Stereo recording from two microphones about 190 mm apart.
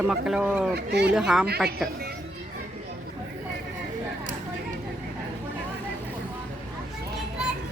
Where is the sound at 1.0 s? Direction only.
5° right (ahead or behind).